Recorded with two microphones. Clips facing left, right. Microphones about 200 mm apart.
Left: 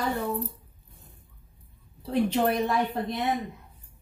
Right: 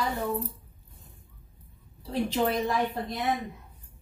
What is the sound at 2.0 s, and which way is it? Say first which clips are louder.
Speech: left 3 dB; 60° left (ahead or behind).